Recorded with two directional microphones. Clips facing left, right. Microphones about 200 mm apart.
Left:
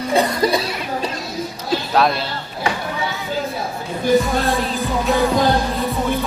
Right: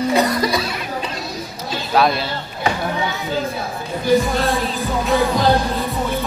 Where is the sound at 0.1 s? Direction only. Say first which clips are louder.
Left 5 dB; 30° left (ahead or behind).